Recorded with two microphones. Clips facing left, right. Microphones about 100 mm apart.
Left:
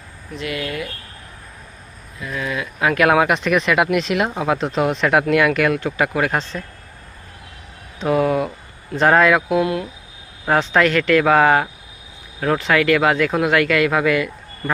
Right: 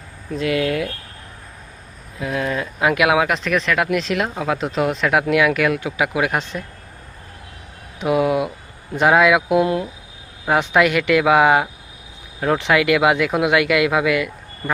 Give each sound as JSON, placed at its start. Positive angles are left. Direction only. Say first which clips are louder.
{"t": 2.4, "sound": "speech", "louder": "right 1 dB", "side_deg": -35}
{"t": 2.7, "sound": "speech", "louder": "even", "side_deg": -20}
{"t": 3.0, "sound": "speech", "louder": "left 4 dB", "side_deg": 0}
{"t": 7.9, "sound": "speech", "louder": "even", "side_deg": -10}
{"t": 10.4, "sound": "speech", "louder": "even", "side_deg": -10}